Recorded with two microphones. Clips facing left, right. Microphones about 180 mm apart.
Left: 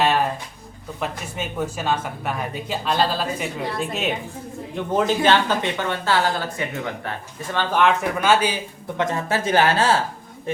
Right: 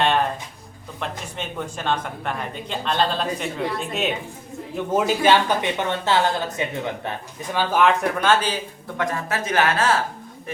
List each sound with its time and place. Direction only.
0.0 s a sound: 5° left (ahead or behind)
0.9 s speech: 5° left (ahead or behind); by 6.7 s 20° right (ahead or behind)
7.5 s speech: 5° right (ahead or behind); by 8.5 s 10° left (ahead or behind)
9.0 s speech: 25° left (ahead or behind)